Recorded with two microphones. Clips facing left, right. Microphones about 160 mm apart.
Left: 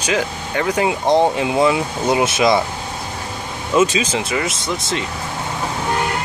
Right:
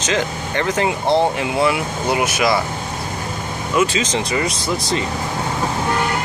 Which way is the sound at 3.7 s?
25° left (ahead or behind).